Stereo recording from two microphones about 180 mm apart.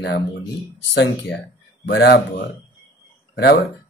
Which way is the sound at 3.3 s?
60° left (ahead or behind).